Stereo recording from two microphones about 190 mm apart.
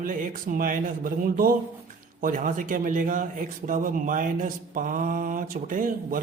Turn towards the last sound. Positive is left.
turn(degrees=-45)  # may be behind; listen again after turning